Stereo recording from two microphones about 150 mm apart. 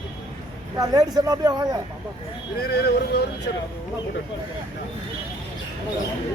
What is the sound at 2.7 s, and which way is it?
Speech, 90° left.